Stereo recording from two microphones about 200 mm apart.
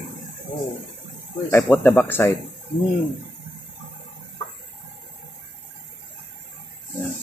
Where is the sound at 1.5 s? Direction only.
10° left (ahead or behind).